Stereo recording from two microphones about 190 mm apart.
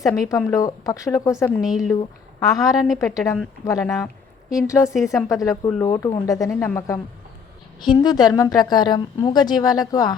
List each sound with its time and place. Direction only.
0.0 s speech: 15° left (ahead or behind); by 2.0 s centre (ahead or behind)
2.4 s a woman's voice: 20° left (ahead or behind)